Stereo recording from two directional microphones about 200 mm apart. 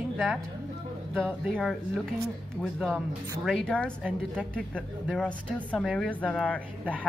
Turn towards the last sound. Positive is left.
turn(degrees=5)  # may be behind; listen again after turning